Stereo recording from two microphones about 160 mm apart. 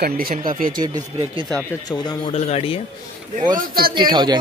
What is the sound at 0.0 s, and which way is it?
Speech, 70° right (ahead or behind).